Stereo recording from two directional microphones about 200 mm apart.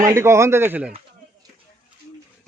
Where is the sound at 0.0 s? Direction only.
15° right (ahead or behind).